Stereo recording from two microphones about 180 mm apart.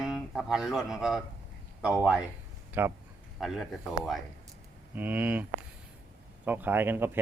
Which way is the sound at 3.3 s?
Centre (ahead or behind).